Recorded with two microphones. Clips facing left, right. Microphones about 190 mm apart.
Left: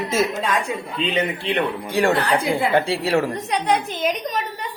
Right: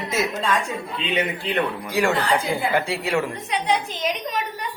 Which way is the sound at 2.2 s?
75° left (ahead or behind).